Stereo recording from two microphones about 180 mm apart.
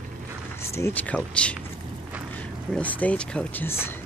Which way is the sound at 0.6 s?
15° left (ahead or behind).